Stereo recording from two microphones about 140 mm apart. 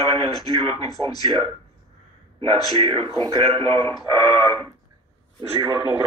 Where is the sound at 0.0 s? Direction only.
45° right (ahead or behind).